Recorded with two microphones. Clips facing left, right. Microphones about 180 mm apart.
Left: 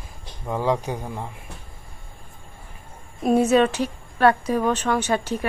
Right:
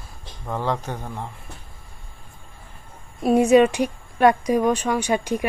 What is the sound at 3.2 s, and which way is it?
A woman's voice, 10° right (ahead or behind).